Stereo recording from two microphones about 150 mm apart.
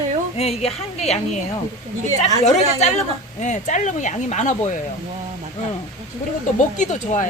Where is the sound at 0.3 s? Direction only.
45° left (ahead or behind).